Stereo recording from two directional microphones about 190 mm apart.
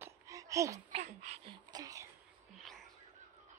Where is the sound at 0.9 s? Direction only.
35° right (ahead or behind).